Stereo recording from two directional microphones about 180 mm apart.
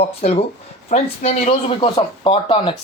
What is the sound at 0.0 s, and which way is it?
Speech, 35° left (ahead or behind).